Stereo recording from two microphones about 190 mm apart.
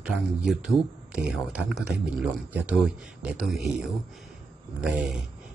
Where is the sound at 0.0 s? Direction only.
Centre (ahead or behind).